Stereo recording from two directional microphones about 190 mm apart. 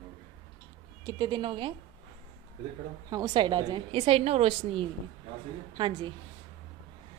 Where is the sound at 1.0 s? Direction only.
20° right (ahead or behind).